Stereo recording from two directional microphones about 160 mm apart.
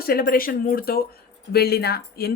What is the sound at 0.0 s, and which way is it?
Speech, 70° left (ahead or behind).